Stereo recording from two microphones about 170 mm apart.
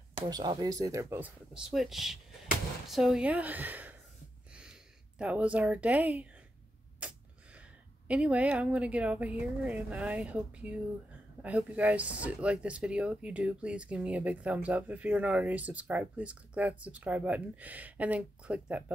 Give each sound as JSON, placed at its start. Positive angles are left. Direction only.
{"t": 0.2, "sound": "speech", "side_deg": -25}
{"t": 4.5, "sound": "a sound", "side_deg": -5}
{"t": 5.2, "sound": "speech", "side_deg": -5}
{"t": 8.1, "sound": "speech", "side_deg": -5}